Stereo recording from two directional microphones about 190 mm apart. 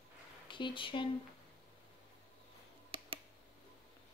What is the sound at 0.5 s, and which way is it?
Speech, 25° left (ahead or behind).